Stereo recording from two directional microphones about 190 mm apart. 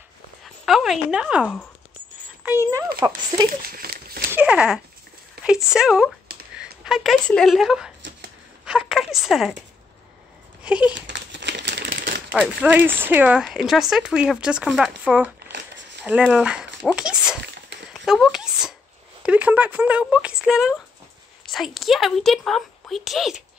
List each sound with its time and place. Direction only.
0.7 s speech: centre (ahead or behind); by 3.4 s 20° right (ahead or behind)
3.4 s speech: 50° right (ahead or behind)
4.3 s speech: 5° right (ahead or behind)
8.6 s a sound: 5° right (ahead or behind)
10.6 s a sound: 5° right (ahead or behind)
11.0 s crumpling: 70° right (ahead or behind)
12.3 s speech: 10° right (ahead or behind)
18.0 s a sound: centre (ahead or behind)
19.2 s speech: 5° right (ahead or behind)